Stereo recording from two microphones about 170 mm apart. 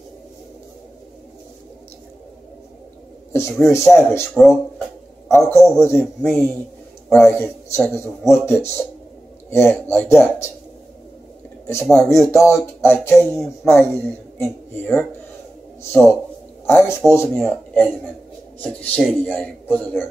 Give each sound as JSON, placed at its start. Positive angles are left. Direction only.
{"t": 3.3, "sound": "a man's voice", "side_deg": 15}
{"t": 11.6, "sound": "a man's voice", "side_deg": 15}